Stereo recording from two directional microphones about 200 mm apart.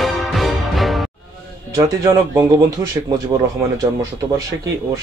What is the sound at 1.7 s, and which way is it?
Speech, 20° right (ahead or behind).